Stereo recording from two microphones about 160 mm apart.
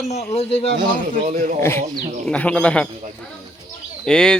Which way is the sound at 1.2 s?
55° right (ahead or behind).